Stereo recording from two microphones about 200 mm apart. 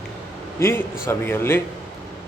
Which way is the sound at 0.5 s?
15° left (ahead or behind).